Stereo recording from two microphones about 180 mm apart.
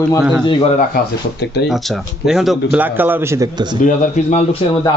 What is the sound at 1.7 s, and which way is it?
A man's voice, centre (ahead or behind).